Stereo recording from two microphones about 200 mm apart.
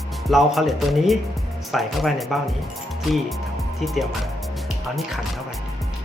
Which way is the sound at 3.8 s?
Centre (ahead or behind).